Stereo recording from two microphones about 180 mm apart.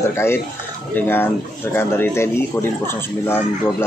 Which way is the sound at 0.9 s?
10° left (ahead or behind).